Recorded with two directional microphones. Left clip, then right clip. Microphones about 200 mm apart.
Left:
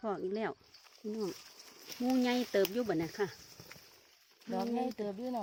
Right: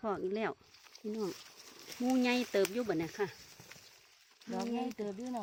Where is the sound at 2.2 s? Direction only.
10° left (ahead or behind).